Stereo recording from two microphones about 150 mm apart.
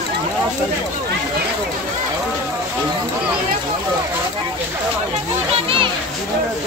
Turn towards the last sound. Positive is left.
turn(degrees=-35)  # may be behind; listen again after turning